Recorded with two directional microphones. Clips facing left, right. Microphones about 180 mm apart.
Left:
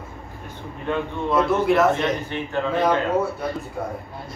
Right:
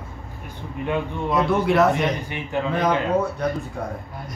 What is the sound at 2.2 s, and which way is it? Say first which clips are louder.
Speech: left 1 dB; 15° right (ahead or behind).